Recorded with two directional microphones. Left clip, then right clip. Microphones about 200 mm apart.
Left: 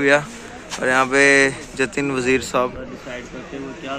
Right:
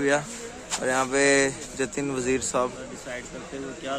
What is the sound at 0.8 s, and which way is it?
A man's voice, 10° right (ahead or behind).